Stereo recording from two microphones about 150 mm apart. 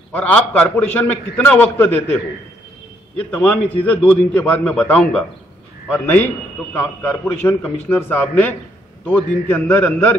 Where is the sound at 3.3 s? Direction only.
10° left (ahead or behind).